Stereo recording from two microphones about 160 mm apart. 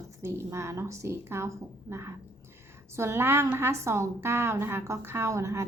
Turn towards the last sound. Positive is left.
turn(degrees=-20)  # may be behind; listen again after turning